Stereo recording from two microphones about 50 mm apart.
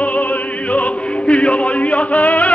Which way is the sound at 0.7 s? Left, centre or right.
Left.